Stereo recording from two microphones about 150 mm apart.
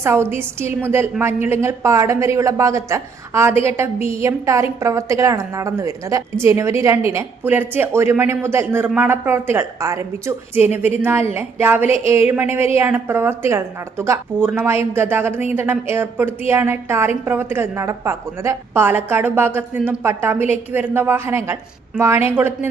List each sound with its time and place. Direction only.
0.0 s a woman's voice: 15° right (ahead or behind)